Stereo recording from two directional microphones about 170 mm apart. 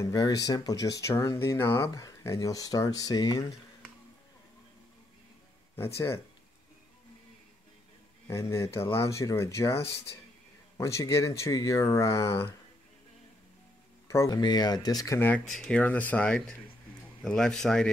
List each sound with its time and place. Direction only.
0.0 s speech: 20° left (ahead or behind)
5.9 s speech: 15° left (ahead or behind)
8.3 s speech: 15° left (ahead or behind)
14.0 s speech: 20° left (ahead or behind)